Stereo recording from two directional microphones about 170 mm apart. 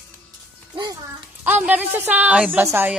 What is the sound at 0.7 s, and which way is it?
Speech, 25° right (ahead or behind).